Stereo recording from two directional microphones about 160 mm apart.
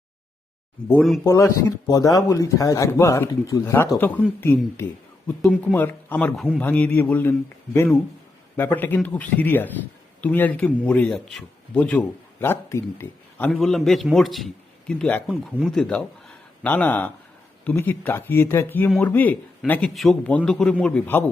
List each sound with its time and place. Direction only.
1.2 s speech: 20° left (ahead or behind); by 6.6 s centre (ahead or behind)
6.6 s a man's voice: 10° left (ahead or behind)
13.5 s a man's voice: centre (ahead or behind)